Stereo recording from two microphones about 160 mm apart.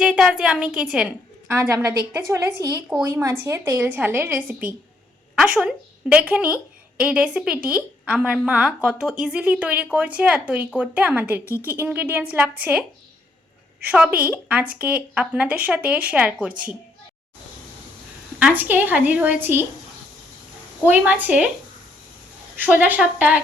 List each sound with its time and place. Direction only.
0.0 s a woman's voice: 5° right (ahead or behind)
1.5 s a woman's voice: 15° right (ahead or behind)
18.3 s a woman's voice: 10° right (ahead or behind)
20.8 s a woman's voice: 10° right (ahead or behind)
22.5 s a woman's voice: 10° right (ahead or behind)